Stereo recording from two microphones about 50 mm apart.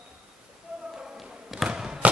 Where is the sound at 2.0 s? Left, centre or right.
Right.